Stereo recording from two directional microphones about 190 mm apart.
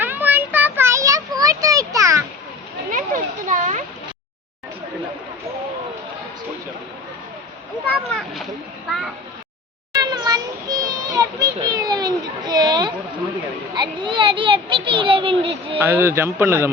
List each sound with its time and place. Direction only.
0.0 s child singing: 10° right (ahead or behind)
2.9 s children playing: 45° right (ahead or behind)
9.9 s children playing: 20° right (ahead or behind)
13.7 s a sound: 25° right (ahead or behind)
15.8 s speech: 10° right (ahead or behind)